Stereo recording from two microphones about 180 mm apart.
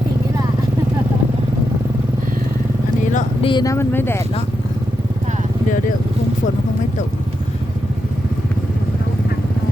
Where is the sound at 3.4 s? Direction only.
25° left (ahead or behind).